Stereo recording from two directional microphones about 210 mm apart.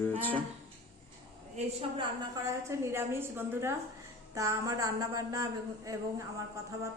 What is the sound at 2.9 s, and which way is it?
A woman's voice, 10° right (ahead or behind).